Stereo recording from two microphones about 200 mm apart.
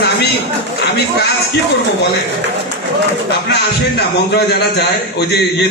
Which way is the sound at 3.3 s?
55° left (ahead or behind).